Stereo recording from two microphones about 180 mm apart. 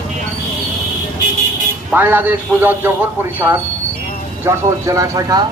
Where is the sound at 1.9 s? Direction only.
10° right (ahead or behind).